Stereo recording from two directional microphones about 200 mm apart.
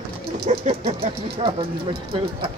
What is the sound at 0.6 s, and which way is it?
Speech, 35° right (ahead or behind).